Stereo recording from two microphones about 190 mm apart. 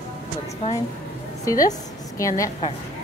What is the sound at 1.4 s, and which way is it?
A woman's voice, 20° left (ahead or behind).